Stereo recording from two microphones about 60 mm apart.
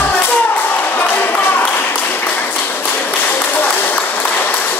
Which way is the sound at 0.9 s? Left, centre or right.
Left.